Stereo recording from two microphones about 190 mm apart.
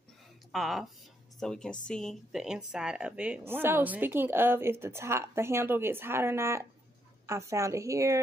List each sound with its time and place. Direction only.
0.5 s speech: centre (ahead or behind); by 8.2 s 15° right (ahead or behind)